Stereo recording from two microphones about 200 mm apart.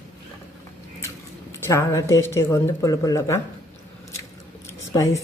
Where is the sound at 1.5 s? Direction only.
15° left (ahead or behind).